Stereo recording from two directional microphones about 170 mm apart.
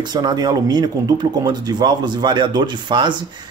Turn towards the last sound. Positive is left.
turn(degrees=-25)  # may be behind; listen again after turning